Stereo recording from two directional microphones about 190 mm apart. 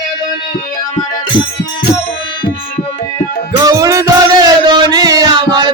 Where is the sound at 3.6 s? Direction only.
20° right (ahead or behind).